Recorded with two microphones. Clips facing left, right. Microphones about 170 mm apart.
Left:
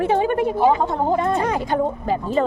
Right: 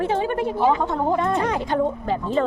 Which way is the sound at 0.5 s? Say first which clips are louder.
Left 2 dB; 10° left (ahead or behind).